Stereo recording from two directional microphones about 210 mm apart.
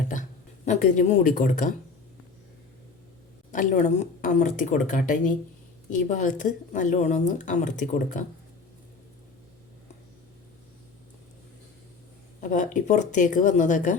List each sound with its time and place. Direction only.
0.1 s speech: 35° left (ahead or behind)
3.5 s a woman's voice: 35° left (ahead or behind)
12.4 s a woman's voice: 35° left (ahead or behind)